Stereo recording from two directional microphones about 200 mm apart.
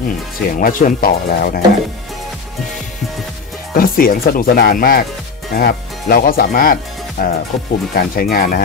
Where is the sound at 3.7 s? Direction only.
45° left (ahead or behind).